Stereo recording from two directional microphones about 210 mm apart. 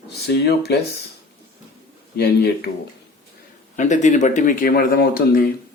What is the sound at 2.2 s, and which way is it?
Speech, 50° left (ahead or behind).